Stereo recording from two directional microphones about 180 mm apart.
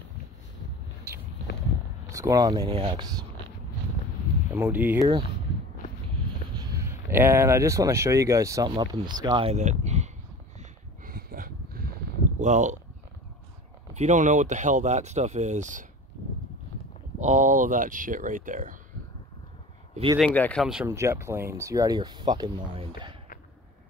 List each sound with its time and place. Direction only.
2.0 s speech: 15° right (ahead or behind)
4.5 s speech: 10° right (ahead or behind)
6.5 s speech: 20° right (ahead or behind); by 10.1 s 40° right (ahead or behind)
10.6 s a sound: 55° right (ahead or behind)
12.4 s speech: 40° right (ahead or behind)
13.9 s speech: 40° right (ahead or behind)
17.2 s speech: 40° right (ahead or behind)
20.2 s speech: 10° left (ahead or behind)
20.6 s speech: 5° right (ahead or behind)
20.9 s speech: 15° right (ahead or behind)